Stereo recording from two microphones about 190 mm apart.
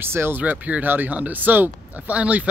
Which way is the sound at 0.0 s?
10° right (ahead or behind).